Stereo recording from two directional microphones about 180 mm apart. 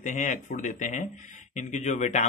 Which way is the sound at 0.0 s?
45° left (ahead or behind).